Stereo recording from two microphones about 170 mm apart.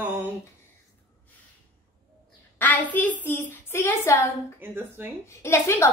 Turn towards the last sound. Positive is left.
turn(degrees=15)  # may be behind; listen again after turning